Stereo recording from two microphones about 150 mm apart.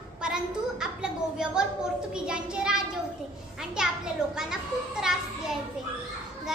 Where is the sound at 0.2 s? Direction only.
5° right (ahead or behind).